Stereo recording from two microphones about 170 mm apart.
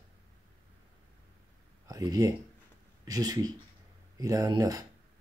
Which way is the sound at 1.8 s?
20° right (ahead or behind).